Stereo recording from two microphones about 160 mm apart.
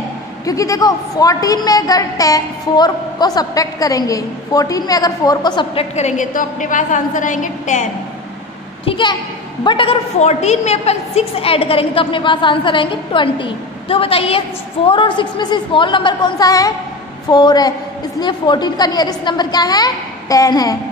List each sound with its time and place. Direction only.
0.5 s a woman's voice: 20° left (ahead or behind)
5.9 s a woman's voice: 50° left (ahead or behind)
8.8 s a woman's voice: 30° left (ahead or behind)